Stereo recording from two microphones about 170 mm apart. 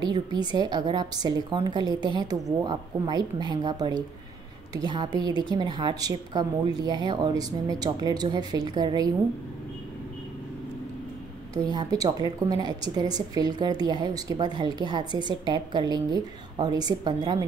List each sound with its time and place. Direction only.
0.0 s a woman's voice: 25° right (ahead or behind)
11.5 s a woman's voice: 20° right (ahead or behind)